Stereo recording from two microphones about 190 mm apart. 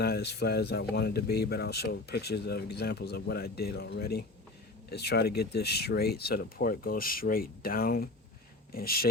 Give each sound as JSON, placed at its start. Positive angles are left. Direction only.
{"t": 0.0, "sound": "speech", "side_deg": 60}